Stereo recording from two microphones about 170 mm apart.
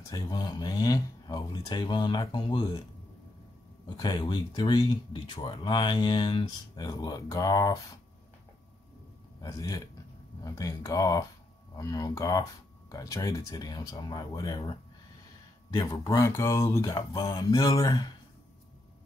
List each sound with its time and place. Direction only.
0.0 s speech: 20° left (ahead or behind)
3.9 s speech: 25° left (ahead or behind)
9.4 s speech: 20° left (ahead or behind)